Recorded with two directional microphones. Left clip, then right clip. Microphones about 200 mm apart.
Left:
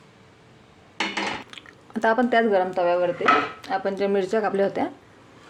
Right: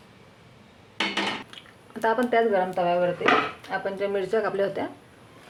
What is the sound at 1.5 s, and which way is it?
Speech, 40° left (ahead or behind).